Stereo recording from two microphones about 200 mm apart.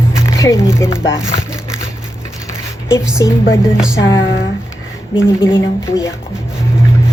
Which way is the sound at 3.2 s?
20° left (ahead or behind).